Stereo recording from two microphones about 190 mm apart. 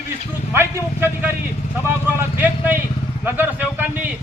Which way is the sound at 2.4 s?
10° right (ahead or behind).